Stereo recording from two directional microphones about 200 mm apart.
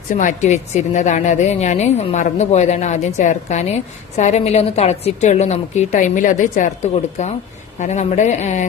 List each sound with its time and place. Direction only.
0.1 s a woman's voice: 40° left (ahead or behind)